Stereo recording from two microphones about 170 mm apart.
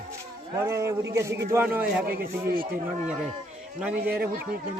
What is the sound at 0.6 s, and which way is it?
Speech, 15° right (ahead or behind).